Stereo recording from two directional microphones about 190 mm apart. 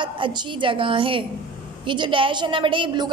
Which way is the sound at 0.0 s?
25° right (ahead or behind).